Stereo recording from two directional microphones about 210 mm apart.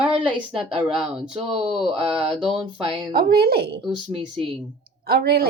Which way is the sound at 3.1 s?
50° right (ahead or behind).